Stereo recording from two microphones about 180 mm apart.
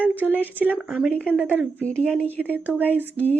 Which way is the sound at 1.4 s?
10° right (ahead or behind).